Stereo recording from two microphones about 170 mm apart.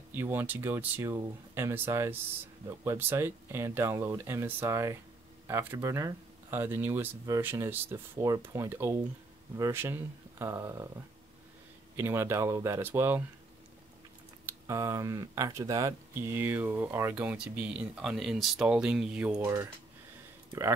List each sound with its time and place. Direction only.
0.1 s speech: 10° right (ahead or behind)
12.0 s speech: 15° right (ahead or behind)
14.4 s speech: 15° right (ahead or behind)